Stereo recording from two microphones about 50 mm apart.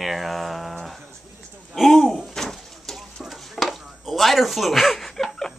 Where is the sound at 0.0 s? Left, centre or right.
Centre.